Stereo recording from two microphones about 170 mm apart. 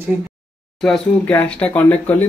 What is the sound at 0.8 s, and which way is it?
Speech, 5° left (ahead or behind).